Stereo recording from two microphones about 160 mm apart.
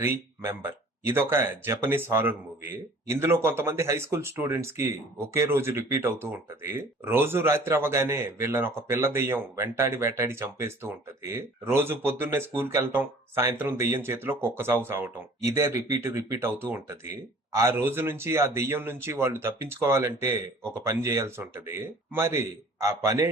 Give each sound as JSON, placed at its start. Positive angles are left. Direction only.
{"t": 0.0, "sound": "speech", "side_deg": -15}